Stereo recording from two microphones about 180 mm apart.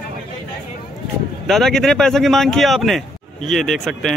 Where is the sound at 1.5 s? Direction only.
Centre (ahead or behind).